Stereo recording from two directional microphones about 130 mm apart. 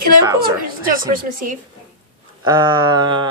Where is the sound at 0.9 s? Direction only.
90° right.